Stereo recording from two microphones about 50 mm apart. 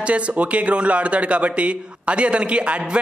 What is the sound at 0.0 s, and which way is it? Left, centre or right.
A man's voice, right.